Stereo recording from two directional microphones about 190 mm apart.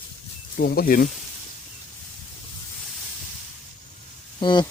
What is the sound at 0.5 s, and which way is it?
Speech, 55° left (ahead or behind).